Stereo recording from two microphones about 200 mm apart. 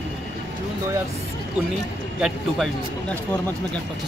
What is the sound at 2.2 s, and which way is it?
A woman's voice, centre (ahead or behind).